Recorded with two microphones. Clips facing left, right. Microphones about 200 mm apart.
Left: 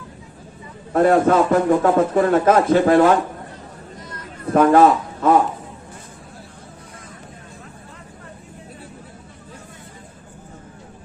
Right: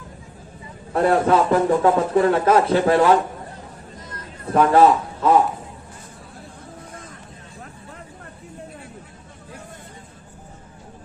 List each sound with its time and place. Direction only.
0.9 s a man's voice: 45° left (ahead or behind)
4.6 s a man's voice: 50° left (ahead or behind)